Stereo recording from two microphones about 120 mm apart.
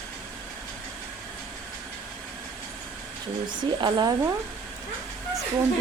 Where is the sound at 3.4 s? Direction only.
40° right (ahead or behind).